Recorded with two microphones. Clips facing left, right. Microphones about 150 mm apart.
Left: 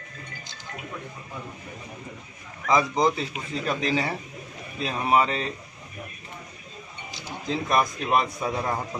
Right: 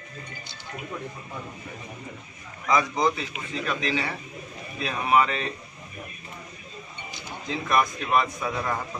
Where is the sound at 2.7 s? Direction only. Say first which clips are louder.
Left 1 dB; 30° left (ahead or behind).